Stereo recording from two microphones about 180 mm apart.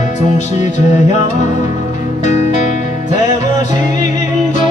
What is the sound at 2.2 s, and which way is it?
Music, 40° left (ahead or behind).